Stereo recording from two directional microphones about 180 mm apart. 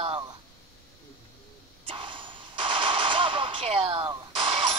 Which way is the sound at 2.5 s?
25° right (ahead or behind).